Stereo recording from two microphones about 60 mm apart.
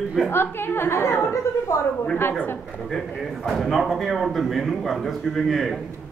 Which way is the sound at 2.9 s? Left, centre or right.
Centre.